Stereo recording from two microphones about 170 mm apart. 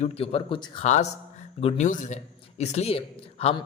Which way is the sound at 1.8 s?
45° left (ahead or behind).